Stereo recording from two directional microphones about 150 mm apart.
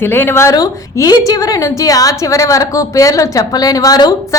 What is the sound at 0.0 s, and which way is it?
A woman's voice, 15° left (ahead or behind).